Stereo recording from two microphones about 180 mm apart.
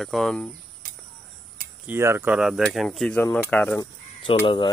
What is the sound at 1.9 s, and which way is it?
Speech, 15° right (ahead or behind).